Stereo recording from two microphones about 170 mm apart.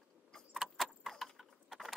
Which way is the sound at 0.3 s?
Centre (ahead or behind).